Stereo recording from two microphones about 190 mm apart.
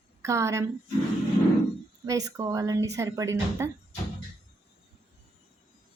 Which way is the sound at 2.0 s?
15° right (ahead or behind).